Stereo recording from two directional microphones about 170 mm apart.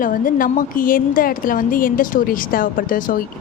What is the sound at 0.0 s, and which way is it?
Speech, 55° left (ahead or behind).